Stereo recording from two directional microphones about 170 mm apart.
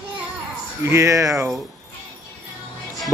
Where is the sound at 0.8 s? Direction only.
15° right (ahead or behind).